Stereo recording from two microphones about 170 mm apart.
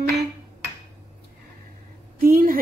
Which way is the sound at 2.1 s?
55° right (ahead or behind).